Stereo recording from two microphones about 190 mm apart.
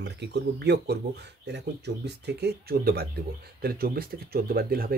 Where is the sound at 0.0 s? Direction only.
65° right (ahead or behind).